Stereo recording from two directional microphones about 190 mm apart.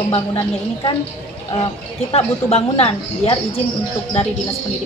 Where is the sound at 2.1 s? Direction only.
30° left (ahead or behind).